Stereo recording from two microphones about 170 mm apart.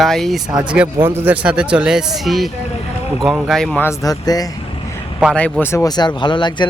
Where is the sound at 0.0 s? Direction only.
Centre (ahead or behind); by 4.4 s 20° left (ahead or behind).